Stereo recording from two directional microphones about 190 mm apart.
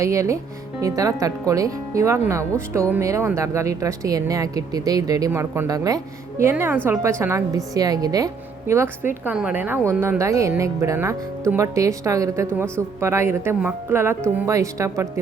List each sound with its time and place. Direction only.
0.0 s a woman's voice: 15° right (ahead or behind)